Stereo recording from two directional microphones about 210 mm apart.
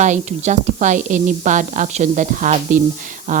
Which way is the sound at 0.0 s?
35° right (ahead or behind).